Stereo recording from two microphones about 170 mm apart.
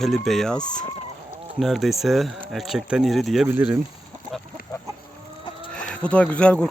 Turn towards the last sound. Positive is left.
turn(degrees=5)  # may be behind; listen again after turning